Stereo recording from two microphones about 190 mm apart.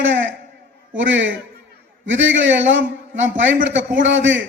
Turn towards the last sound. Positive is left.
turn(degrees=-80)